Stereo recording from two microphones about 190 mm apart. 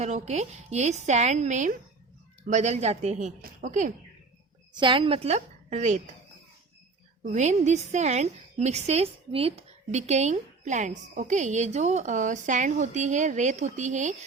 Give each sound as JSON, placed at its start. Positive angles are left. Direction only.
{"t": 0.0, "sound": "a woman's voice", "side_deg": -35}
{"t": 4.8, "sound": "a woman's voice", "side_deg": -25}
{"t": 7.3, "sound": "a woman's voice", "side_deg": -40}